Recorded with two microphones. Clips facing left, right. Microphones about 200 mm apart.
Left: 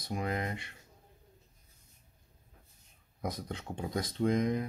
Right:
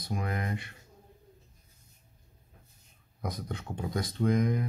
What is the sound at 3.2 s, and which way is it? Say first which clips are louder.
Speech: right 1 dB; 25° left (ahead or behind).